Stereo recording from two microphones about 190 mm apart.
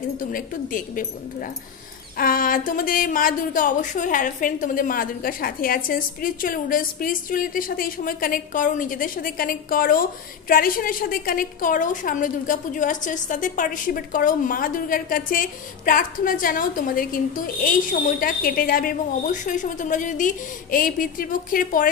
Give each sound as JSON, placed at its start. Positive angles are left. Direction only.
{"t": 0.2, "sound": "a woman's voice", "side_deg": 45}
{"t": 2.1, "sound": "a woman's voice", "side_deg": 50}